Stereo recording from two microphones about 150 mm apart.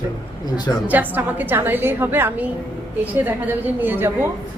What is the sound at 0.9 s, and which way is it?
A woman's voice, 10° right (ahead or behind).